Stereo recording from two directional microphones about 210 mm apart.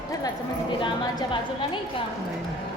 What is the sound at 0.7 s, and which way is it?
A woman's voice, 20° left (ahead or behind).